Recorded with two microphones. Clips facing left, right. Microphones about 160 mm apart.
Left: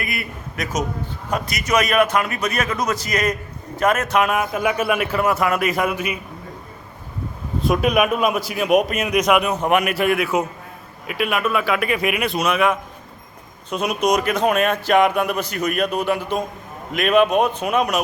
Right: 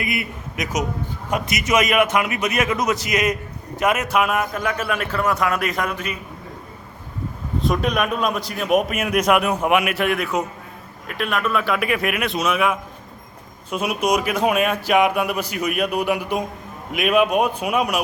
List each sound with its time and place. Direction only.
0.0 s a man's voice: 20° right (ahead or behind); by 6.1 s 10° left (ahead or behind)
7.6 s a man's voice: 5° left (ahead or behind)